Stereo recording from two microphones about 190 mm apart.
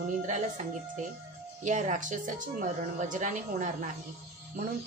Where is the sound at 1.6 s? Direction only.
40° right (ahead or behind).